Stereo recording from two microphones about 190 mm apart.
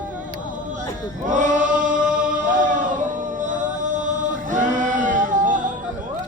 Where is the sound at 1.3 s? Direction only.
40° right (ahead or behind).